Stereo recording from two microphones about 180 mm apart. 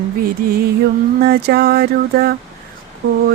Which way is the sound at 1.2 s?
60° right (ahead or behind).